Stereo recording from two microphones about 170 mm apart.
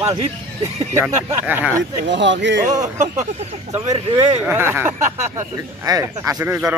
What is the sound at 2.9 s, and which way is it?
Speech, 40° right (ahead or behind).